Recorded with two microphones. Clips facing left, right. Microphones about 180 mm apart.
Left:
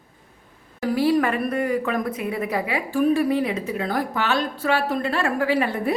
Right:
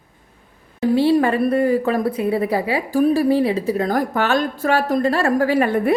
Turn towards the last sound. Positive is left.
turn(degrees=-55)  # may be behind; listen again after turning